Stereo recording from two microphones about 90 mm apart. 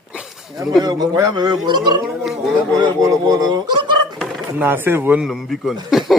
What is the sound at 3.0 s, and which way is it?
Speech, 45° right (ahead or behind).